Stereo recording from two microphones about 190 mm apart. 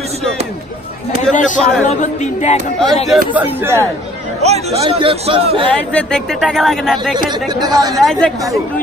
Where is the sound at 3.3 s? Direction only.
10° right (ahead or behind).